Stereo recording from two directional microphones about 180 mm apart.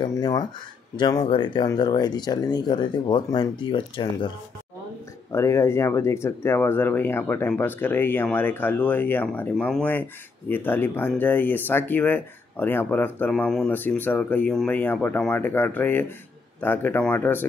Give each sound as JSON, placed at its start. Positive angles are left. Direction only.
{"t": 0.0, "sound": "speech", "side_deg": 25}
{"t": 5.3, "sound": "speech", "side_deg": 15}